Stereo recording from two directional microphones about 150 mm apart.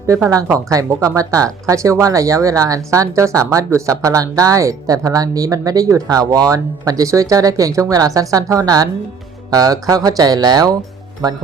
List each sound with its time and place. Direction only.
0.1 s speech: 20° right (ahead or behind)